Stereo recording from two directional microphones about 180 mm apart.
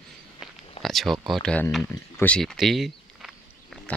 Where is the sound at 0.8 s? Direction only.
Centre (ahead or behind).